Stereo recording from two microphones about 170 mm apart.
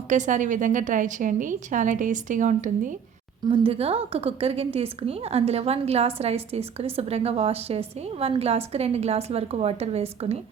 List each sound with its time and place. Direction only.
0.1 s a woman's voice: 45° right (ahead or behind)
3.5 s a woman's voice: 35° right (ahead or behind)